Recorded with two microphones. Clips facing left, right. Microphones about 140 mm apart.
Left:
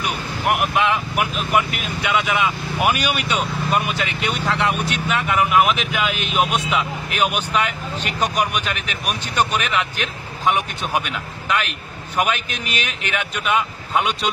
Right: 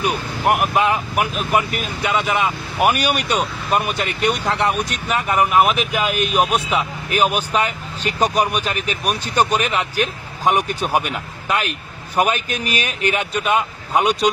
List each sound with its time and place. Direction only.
0.0 s speech: 35° right (ahead or behind)
13.0 s speech: 40° right (ahead or behind)